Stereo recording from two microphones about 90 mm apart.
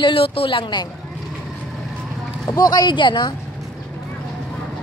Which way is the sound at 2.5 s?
45° left (ahead or behind).